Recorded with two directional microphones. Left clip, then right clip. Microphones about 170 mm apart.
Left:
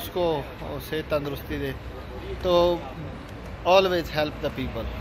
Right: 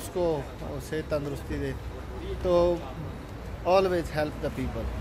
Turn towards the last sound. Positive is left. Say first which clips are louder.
# left 3 dB
turn(degrees=-15)  # may be behind; listen again after turning